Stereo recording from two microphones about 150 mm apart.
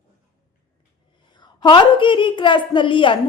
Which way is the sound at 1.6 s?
30° left (ahead or behind).